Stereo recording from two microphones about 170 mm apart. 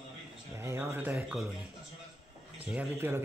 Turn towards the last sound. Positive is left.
turn(degrees=-15)  # may be behind; listen again after turning